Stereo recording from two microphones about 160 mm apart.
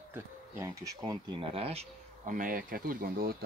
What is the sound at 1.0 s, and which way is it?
Speech, 30° right (ahead or behind).